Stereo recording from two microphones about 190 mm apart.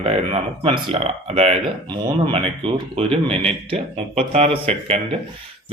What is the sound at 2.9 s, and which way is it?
Speech, 30° right (ahead or behind).